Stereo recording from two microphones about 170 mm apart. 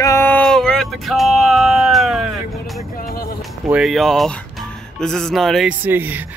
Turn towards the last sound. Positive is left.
turn(degrees=-10)  # may be behind; listen again after turning